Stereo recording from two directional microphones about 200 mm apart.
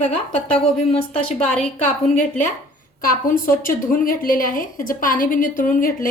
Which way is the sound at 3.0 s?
45° left (ahead or behind).